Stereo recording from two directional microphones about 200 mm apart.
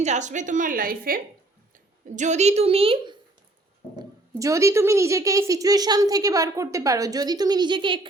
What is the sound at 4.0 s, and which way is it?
Speech, 15° right (ahead or behind).